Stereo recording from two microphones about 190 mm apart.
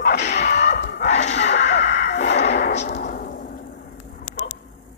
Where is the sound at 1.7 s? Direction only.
65° left (ahead or behind).